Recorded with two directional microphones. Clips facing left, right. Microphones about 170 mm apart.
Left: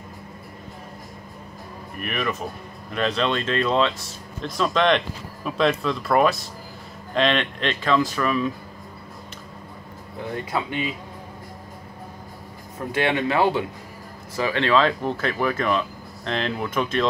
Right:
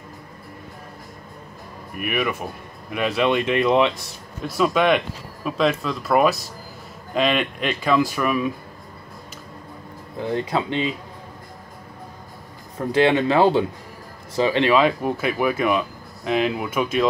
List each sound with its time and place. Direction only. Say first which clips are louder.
2.0 s speech: right 3 dB; 10° right (ahead or behind)
10.3 s speech: right 4 dB; 25° right (ahead or behind)
12.9 s speech: right 5 dB; 25° right (ahead or behind); by 17.1 s 10° right (ahead or behind)